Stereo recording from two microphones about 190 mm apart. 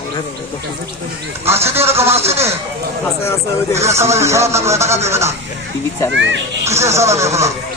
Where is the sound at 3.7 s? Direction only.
15° right (ahead or behind).